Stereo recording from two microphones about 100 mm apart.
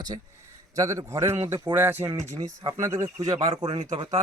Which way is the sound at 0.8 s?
30° right (ahead or behind).